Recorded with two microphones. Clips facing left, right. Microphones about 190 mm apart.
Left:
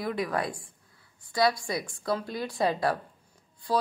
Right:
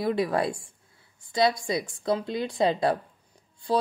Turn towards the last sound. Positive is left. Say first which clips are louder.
# right 2 dB
turn(degrees=-25)  # may be behind; listen again after turning